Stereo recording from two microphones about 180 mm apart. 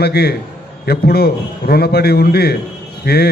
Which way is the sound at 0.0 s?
60° left (ahead or behind).